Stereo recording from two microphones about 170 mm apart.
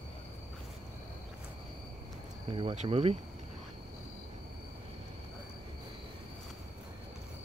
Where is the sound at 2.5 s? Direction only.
30° right (ahead or behind).